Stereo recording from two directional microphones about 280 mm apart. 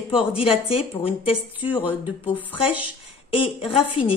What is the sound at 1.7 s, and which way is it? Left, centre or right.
A woman's voice, centre.